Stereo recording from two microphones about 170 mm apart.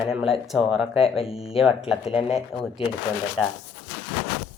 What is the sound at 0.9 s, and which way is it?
Speech, 35° left (ahead or behind).